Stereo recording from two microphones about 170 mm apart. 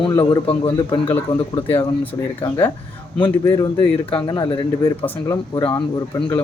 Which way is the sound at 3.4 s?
15° left (ahead or behind).